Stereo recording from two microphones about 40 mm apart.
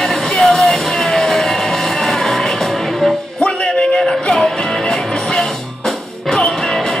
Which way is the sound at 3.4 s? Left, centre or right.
Left.